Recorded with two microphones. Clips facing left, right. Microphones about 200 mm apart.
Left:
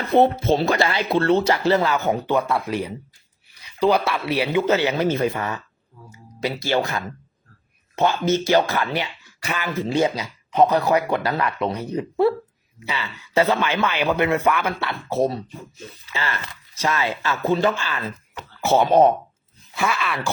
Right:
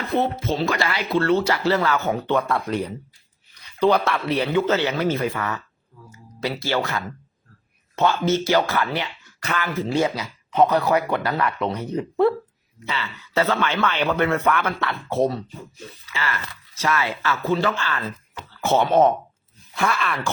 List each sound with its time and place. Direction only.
0.2 s a man's voice: 30° left (ahead or behind); by 14.8 s 10° left (ahead or behind)
16.0 s speech: 25° left (ahead or behind)
19.7 s speech: centre (ahead or behind)